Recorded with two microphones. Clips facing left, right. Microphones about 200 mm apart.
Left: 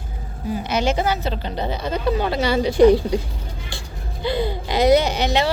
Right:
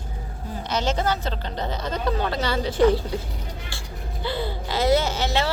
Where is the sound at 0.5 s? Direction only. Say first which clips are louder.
Left 4 dB; 10° left (ahead or behind).